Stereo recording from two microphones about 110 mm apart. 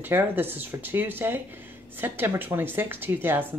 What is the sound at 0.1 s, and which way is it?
Speech, 20° right (ahead or behind).